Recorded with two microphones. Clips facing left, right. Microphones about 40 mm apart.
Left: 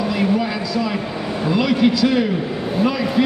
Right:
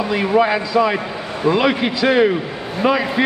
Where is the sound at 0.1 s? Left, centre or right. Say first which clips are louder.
Right 7 dB; right.